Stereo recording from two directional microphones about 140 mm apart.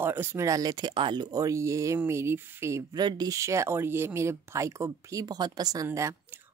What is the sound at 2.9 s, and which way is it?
Speech, 30° right (ahead or behind).